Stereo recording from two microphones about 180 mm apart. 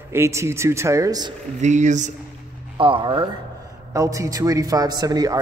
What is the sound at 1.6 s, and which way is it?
Speech, 40° right (ahead or behind).